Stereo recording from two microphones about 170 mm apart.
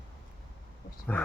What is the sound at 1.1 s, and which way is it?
Speech, 10° left (ahead or behind).